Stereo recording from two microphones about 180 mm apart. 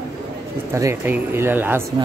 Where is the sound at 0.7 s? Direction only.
15° right (ahead or behind).